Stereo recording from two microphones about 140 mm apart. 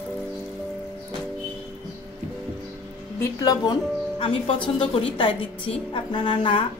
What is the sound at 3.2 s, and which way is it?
Speech, 25° left (ahead or behind).